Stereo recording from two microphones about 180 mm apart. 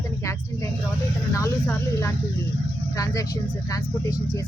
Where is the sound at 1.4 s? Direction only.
15° left (ahead or behind).